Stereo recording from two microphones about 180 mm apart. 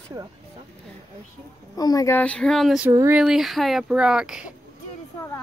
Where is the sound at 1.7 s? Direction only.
20° left (ahead or behind).